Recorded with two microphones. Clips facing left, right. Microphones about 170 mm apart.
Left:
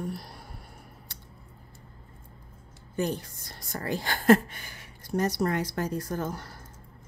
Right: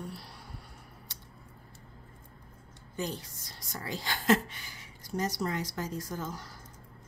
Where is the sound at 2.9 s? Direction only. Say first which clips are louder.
Left 7 dB; 60° left (ahead or behind).